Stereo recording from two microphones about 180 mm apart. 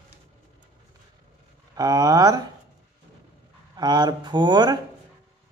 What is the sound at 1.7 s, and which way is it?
Speech, 20° right (ahead or behind).